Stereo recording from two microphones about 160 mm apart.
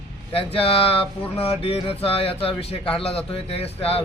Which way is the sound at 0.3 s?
35° left (ahead or behind).